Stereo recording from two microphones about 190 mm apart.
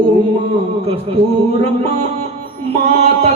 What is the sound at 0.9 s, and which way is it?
Music, 30° right (ahead or behind).